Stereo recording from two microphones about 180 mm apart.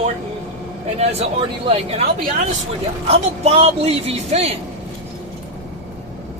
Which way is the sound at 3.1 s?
35° right (ahead or behind).